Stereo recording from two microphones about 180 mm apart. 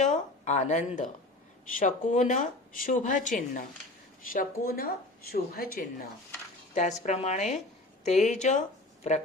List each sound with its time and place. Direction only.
0.0 s speech: 40° left (ahead or behind)
7.0 s a woman's voice: 40° left (ahead or behind)